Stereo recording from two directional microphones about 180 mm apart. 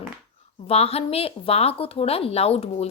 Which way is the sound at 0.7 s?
35° left (ahead or behind).